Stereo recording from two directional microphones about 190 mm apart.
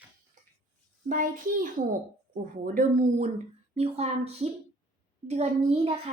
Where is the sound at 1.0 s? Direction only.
45° right (ahead or behind).